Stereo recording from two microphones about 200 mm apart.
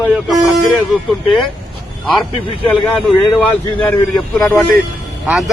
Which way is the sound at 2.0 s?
Centre (ahead or behind).